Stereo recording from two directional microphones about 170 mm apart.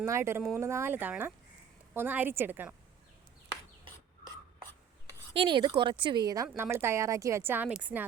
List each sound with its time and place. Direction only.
0.0 s speech: 15° right (ahead or behind)
3.8 s a sound: 25° right (ahead or behind)
5.3 s speech: 30° right (ahead or behind); by 8.0 s 10° right (ahead or behind)